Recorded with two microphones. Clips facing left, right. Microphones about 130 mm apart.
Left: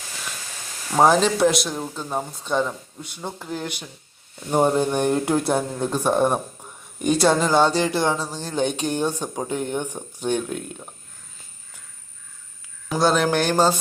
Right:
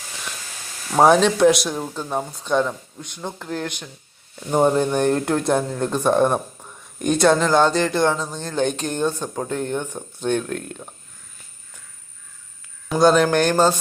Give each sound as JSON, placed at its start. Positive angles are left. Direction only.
{"t": 0.9, "sound": "speech", "side_deg": 0}
{"t": 12.9, "sound": "speech", "side_deg": 0}